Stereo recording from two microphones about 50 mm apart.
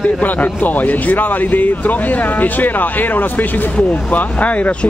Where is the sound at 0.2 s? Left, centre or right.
Left.